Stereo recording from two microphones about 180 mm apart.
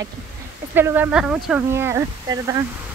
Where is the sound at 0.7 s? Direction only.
10° right (ahead or behind).